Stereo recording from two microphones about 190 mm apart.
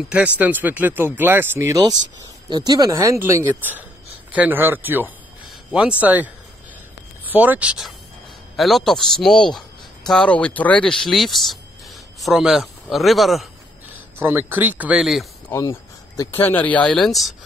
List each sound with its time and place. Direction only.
0.1 s a man's voice: 10° right (ahead or behind)
14.1 s speech: 10° right (ahead or behind)
16.3 s speech: 10° left (ahead or behind)